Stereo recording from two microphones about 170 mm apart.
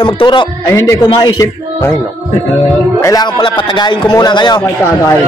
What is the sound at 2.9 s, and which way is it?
A man's voice, 20° left (ahead or behind).